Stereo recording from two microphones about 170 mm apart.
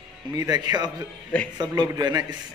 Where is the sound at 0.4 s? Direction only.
20° right (ahead or behind).